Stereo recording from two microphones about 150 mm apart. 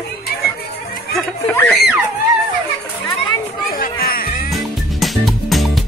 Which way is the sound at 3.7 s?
75° left (ahead or behind).